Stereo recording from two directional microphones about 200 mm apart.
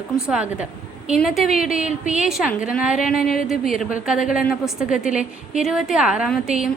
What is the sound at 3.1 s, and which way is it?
Speech, 45° left (ahead or behind).